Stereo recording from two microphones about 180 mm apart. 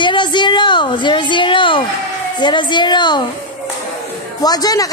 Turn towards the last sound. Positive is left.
turn(degrees=20)  # may be behind; listen again after turning